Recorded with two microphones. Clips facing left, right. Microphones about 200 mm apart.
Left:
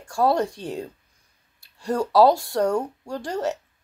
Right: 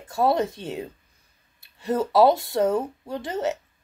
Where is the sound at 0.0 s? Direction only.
20° right (ahead or behind).